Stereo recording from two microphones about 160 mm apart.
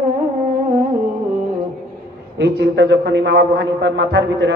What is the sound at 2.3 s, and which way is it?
A man's voice, 90° right.